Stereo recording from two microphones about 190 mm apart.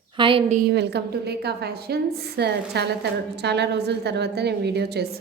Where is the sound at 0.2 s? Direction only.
25° right (ahead or behind).